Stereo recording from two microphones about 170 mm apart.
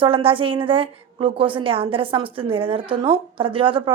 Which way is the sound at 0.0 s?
30° right (ahead or behind).